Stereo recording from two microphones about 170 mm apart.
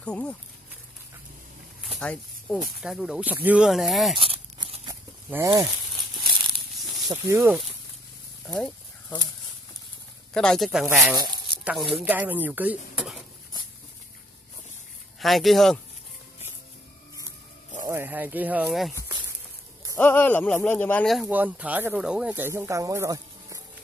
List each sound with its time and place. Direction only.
0.0 s speech: 5° left (ahead or behind)
2.0 s snake: 5° left (ahead or behind)
2.8 s speech: centre (ahead or behind)
4.2 s a sound: 35° right (ahead or behind)
5.3 s speech: 20° right (ahead or behind)
7.1 s speech: 15° right (ahead or behind)
8.5 s speech: 5° left (ahead or behind)
10.3 s speech: 5° left (ahead or behind)
11.1 s a sound: 25° right (ahead or behind)
11.6 s speech: centre (ahead or behind)
15.1 s speech: centre (ahead or behind)
17.8 s speech: 15° right (ahead or behind)
20.0 s speech: 10° left (ahead or behind)
21.3 s speech: 10° right (ahead or behind)